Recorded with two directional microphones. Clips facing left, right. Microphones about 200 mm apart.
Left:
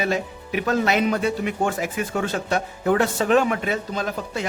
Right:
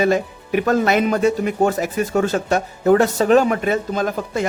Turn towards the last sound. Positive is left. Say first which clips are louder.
# right 6 dB
turn(degrees=-50)  # may be behind; listen again after turning